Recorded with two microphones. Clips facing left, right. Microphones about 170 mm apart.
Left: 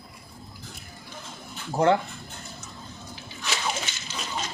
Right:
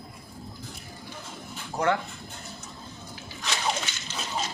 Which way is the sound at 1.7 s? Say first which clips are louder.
Left 5 dB; 25° left (ahead or behind).